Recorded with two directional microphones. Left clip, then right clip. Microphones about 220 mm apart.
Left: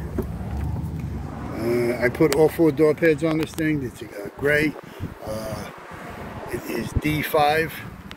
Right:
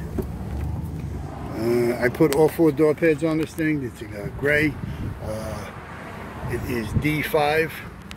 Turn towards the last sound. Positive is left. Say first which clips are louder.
# left 1 dB
turn(degrees=0)  # may be behind; listen again after turning